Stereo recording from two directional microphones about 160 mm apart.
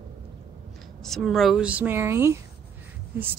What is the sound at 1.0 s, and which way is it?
A woman's voice, centre (ahead or behind).